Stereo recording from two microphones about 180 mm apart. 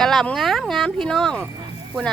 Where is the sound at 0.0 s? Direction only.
Centre (ahead or behind).